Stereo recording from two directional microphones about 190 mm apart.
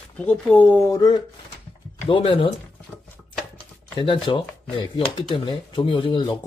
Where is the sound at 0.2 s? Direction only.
10° left (ahead or behind); by 2.5 s 25° left (ahead or behind).